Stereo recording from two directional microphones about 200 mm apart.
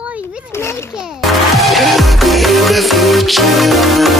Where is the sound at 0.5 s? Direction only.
15° left (ahead or behind).